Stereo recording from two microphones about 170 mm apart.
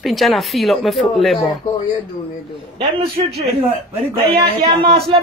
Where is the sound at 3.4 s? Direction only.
35° right (ahead or behind).